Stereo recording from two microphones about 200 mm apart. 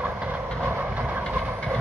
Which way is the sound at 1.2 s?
5° right (ahead or behind).